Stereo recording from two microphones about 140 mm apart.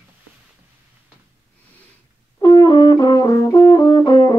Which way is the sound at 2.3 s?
25° left (ahead or behind).